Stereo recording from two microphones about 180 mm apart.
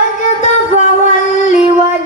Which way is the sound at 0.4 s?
40° left (ahead or behind).